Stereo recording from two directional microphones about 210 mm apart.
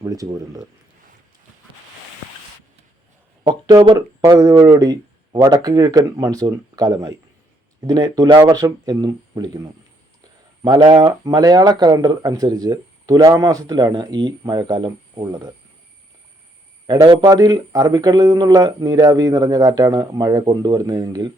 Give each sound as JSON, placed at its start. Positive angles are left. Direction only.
{"t": 0.0, "sound": "speech", "side_deg": -15}
{"t": 3.4, "sound": "speech", "side_deg": -20}
{"t": 16.8, "sound": "speech", "side_deg": -20}